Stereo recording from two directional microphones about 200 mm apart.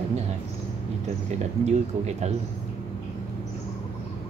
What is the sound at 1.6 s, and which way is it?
Speech, 35° right (ahead or behind).